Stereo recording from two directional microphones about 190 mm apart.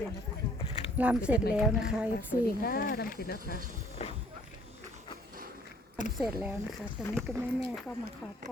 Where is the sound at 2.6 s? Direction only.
50° left (ahead or behind).